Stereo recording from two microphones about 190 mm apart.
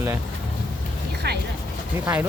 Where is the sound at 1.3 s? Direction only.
60° right (ahead or behind).